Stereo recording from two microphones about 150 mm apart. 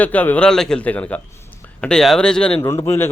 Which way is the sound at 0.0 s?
10° left (ahead or behind).